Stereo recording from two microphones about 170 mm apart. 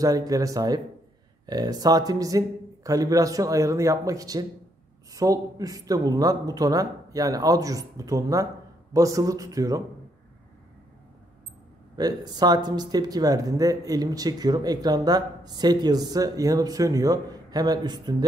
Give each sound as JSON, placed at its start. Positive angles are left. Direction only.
{"t": 0.0, "sound": "speech", "side_deg": -20}
{"t": 12.0, "sound": "speech", "side_deg": -25}